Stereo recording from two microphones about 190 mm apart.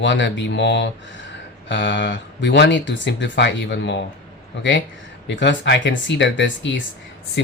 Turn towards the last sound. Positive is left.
turn(degrees=75)  # may be behind; listen again after turning